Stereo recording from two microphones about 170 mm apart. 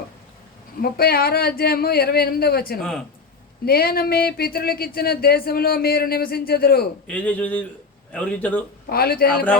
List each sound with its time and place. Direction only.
0.8 s speech: 65° left (ahead or behind)
7.1 s a man's voice: 10° left (ahead or behind)
8.9 s speech: 65° left (ahead or behind)